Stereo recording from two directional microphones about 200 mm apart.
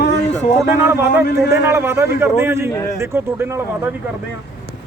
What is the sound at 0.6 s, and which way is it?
A man's voice, 10° right (ahead or behind).